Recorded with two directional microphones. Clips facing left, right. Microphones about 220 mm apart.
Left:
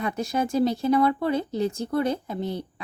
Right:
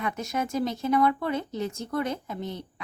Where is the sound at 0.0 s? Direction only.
35° left (ahead or behind).